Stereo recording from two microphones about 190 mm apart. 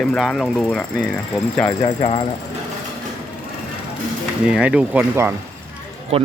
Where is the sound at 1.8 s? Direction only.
30° left (ahead or behind).